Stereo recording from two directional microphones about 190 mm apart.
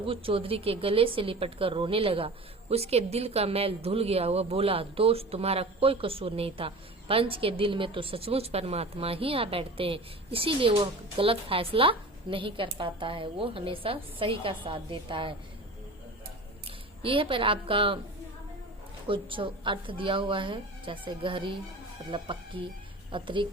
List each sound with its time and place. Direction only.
0.0 s a woman's voice: 30° right (ahead or behind)
16.6 s speech: 30° right (ahead or behind)
19.0 s a woman's voice: 25° right (ahead or behind)